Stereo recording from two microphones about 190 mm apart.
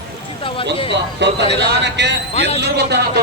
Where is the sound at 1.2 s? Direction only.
65° right (ahead or behind).